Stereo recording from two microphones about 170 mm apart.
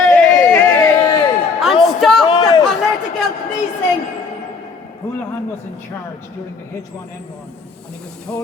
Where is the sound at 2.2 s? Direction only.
25° left (ahead or behind).